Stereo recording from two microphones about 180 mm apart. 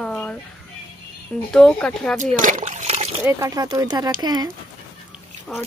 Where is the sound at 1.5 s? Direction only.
5° left (ahead or behind).